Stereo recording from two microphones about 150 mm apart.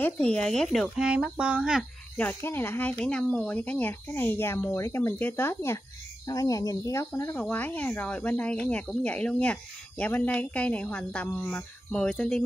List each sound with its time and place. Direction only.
0.0 s speech: 10° left (ahead or behind)
2.1 s speech: 10° left (ahead or behind)